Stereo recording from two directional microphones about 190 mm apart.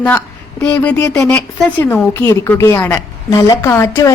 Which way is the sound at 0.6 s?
5° left (ahead or behind).